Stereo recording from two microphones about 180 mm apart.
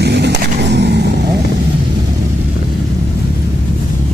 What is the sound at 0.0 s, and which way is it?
Vehicle, 70° right (ahead or behind).